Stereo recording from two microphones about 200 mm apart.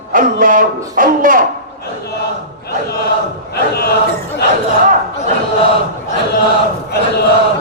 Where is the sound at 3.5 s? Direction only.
50° left (ahead or behind).